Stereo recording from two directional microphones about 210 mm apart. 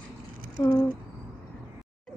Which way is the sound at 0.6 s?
20° left (ahead or behind).